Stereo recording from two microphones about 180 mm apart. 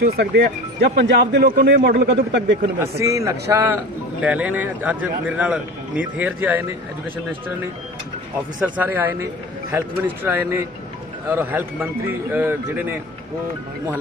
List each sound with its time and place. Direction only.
0.0 s speech: 60° right (ahead or behind)
0.9 s a man's voice: 70° right (ahead or behind)
2.8 s speech: 15° right (ahead or behind)
8.6 s speech: 10° right (ahead or behind)